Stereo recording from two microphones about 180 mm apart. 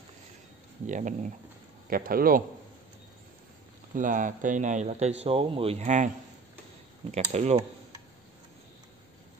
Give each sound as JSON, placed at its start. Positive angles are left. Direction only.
{"t": 0.8, "sound": "a man's voice", "side_deg": -45}
{"t": 3.9, "sound": "speech", "side_deg": -45}